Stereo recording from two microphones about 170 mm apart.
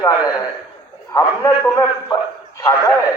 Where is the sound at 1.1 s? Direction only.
20° left (ahead or behind).